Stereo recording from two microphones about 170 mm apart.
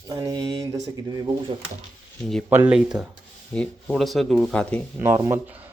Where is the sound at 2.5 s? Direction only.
15° right (ahead or behind); by 4.8 s 5° left (ahead or behind).